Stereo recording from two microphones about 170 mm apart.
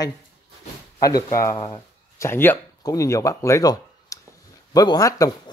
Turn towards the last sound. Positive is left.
turn(degrees=20)  # may be behind; listen again after turning